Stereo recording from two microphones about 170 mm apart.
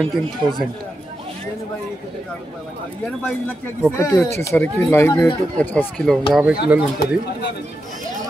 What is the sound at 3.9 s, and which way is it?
Speech, 20° left (ahead or behind).